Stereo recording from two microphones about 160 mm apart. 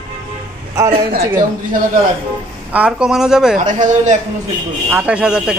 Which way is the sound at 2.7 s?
5° right (ahead or behind).